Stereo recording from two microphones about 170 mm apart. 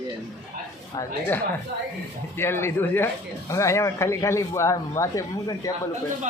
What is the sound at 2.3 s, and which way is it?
A man's voice, 15° left (ahead or behind).